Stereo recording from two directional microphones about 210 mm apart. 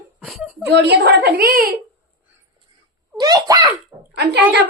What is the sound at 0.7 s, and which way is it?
A woman's voice, 50° right (ahead or behind).